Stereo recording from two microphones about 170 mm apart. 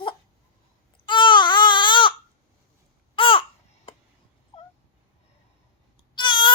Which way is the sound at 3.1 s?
30° left (ahead or behind).